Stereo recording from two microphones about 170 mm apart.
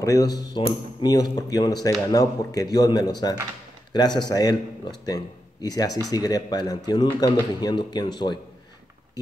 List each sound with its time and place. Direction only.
0.0 s speech: 20° left (ahead or behind)